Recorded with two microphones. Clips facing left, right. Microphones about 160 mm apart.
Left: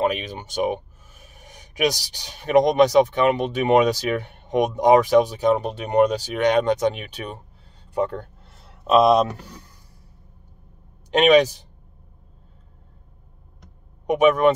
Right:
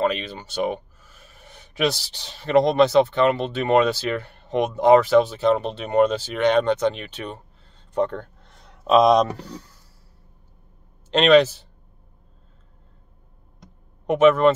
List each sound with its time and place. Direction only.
0.0 s speech: 15° left (ahead or behind)
8.8 s speech: 5° left (ahead or behind)
11.1 s speech: 15° left (ahead or behind)
14.0 s speech: 15° left (ahead or behind)